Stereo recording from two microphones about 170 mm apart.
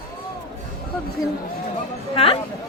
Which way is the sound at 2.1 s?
35° left (ahead or behind).